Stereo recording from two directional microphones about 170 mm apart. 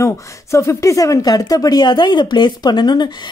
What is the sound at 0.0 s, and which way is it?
Speech, 15° left (ahead or behind).